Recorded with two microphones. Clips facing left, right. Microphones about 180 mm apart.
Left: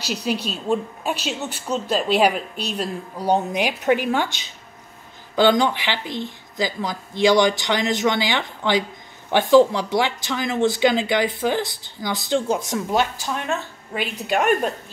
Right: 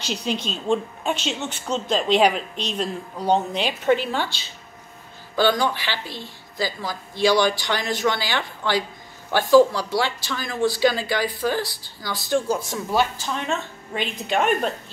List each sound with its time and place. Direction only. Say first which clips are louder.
0.0 s a woman's voice: left 2 dB; 10° left (ahead or behind)